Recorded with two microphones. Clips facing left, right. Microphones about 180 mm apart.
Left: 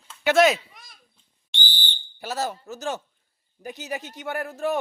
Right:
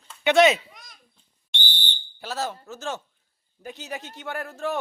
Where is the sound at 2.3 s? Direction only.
Centre (ahead or behind).